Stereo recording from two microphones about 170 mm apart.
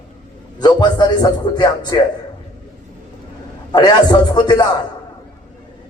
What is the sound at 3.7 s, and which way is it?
Music, 25° left (ahead or behind).